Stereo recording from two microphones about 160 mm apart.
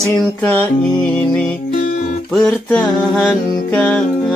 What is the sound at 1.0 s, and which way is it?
Music, 10° left (ahead or behind).